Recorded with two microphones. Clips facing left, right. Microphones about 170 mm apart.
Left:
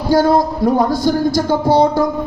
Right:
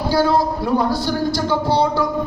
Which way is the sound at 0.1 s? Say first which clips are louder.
Left 5 dB; 45° left (ahead or behind).